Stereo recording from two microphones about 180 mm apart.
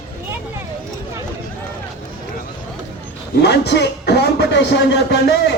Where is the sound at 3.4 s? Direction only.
70° left (ahead or behind).